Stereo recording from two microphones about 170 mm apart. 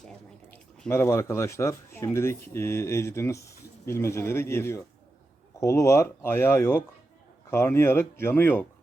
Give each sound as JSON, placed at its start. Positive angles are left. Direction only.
{"t": 0.9, "sound": "speech", "side_deg": 15}